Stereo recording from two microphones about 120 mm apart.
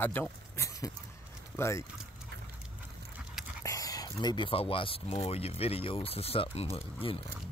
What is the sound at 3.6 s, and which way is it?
Speech, 30° left (ahead or behind).